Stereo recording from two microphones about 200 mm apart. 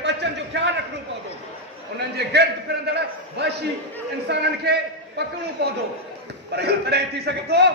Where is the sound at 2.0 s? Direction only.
55° right (ahead or behind).